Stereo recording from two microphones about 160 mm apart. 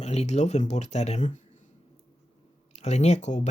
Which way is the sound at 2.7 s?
45° left (ahead or behind).